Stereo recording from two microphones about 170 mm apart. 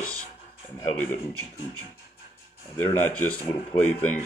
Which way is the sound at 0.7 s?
10° left (ahead or behind).